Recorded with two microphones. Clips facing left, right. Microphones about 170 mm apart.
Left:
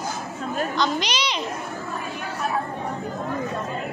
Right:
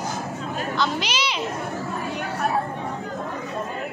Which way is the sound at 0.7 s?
5° right (ahead or behind).